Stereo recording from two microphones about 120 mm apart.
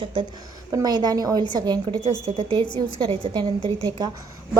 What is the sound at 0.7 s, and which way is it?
A woman's voice, 30° right (ahead or behind).